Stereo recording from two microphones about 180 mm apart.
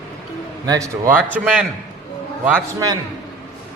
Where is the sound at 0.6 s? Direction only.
20° right (ahead or behind).